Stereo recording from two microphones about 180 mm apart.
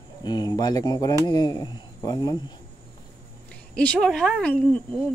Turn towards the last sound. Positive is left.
turn(degrees=5)  # may be behind; listen again after turning